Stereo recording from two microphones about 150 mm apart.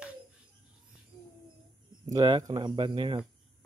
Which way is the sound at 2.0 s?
30° right (ahead or behind).